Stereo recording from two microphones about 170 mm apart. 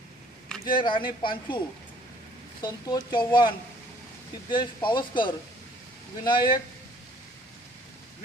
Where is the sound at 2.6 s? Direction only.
25° left (ahead or behind).